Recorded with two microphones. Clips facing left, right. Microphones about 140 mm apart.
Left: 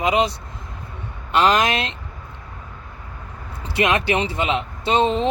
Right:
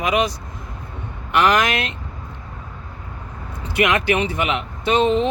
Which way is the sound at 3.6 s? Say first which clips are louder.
Right 1 dB; 30° left (ahead or behind).